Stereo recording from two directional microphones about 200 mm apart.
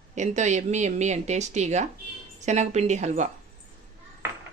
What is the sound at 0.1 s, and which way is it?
Speech, 35° right (ahead or behind).